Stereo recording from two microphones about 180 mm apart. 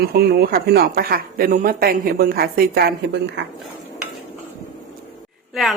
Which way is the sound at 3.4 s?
70° right (ahead or behind).